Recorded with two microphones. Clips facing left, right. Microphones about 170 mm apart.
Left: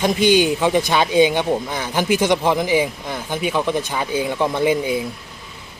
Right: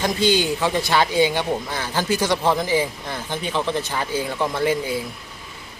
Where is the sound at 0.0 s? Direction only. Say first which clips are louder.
Left 4 dB; 20° left (ahead or behind).